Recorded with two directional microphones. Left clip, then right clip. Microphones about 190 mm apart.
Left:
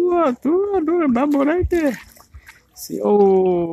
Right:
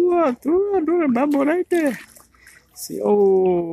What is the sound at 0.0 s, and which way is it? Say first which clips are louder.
Speech: left 1 dB; centre (ahead or behind).